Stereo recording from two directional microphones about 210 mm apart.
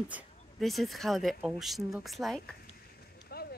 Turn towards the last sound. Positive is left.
turn(degrees=50)  # may be behind; listen again after turning